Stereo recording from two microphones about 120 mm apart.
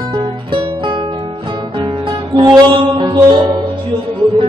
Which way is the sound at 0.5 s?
45° right (ahead or behind).